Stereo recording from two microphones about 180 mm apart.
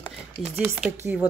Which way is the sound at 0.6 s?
5° right (ahead or behind).